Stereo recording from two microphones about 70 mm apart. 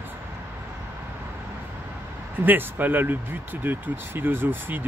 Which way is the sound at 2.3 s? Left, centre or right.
Right.